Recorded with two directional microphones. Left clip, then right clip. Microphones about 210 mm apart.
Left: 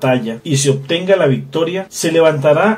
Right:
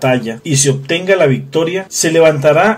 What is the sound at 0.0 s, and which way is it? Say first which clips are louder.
Speech: right 1 dB; 20° right (ahead or behind).